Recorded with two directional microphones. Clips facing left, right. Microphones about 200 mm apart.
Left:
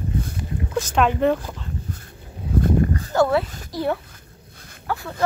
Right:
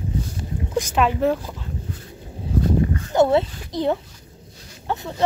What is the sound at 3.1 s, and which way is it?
A child's voice, 25° right (ahead or behind).